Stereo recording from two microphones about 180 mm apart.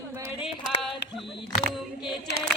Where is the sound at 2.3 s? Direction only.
65° left (ahead or behind).